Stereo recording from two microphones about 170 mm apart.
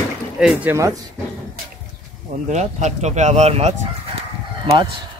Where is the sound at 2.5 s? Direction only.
45° right (ahead or behind).